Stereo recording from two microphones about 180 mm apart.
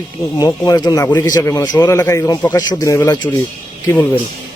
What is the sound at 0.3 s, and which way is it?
A man's voice, 20° left (ahead or behind).